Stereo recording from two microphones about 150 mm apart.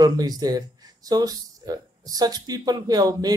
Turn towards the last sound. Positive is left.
turn(degrees=-25)  # may be behind; listen again after turning